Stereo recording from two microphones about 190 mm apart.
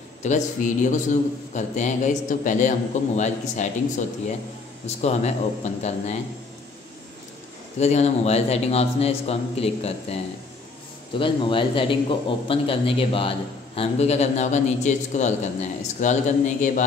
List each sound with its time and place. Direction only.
0.2 s a man's voice: 40° left (ahead or behind)
4.8 s a man's voice: 35° left (ahead or behind)
7.8 s a man's voice: 35° left (ahead or behind)